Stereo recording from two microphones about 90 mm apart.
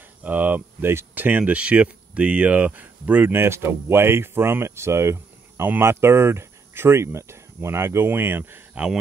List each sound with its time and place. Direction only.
0.2 s speech: 20° right (ahead or behind)
8.7 s speech: 10° right (ahead or behind)